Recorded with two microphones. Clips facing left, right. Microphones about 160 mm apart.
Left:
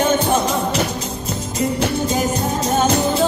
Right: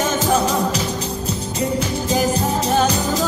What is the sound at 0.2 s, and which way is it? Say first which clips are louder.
Music: even; 35° right (ahead or behind).